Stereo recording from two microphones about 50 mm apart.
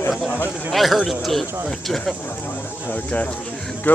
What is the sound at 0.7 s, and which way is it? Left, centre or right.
Speech, centre.